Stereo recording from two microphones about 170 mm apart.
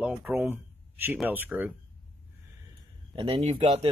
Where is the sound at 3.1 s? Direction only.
30° right (ahead or behind).